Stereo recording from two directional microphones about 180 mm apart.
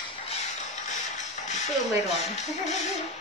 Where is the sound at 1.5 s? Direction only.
40° left (ahead or behind).